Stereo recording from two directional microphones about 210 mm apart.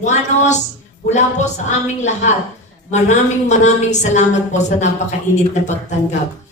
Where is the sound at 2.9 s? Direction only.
35° left (ahead or behind).